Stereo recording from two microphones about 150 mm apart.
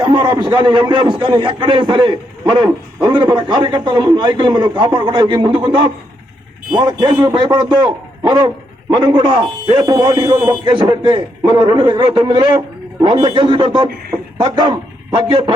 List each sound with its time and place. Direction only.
0.0 s a man's voice: 30° right (ahead or behind)